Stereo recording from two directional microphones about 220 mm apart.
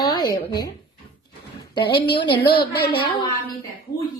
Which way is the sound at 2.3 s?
45° left (ahead or behind).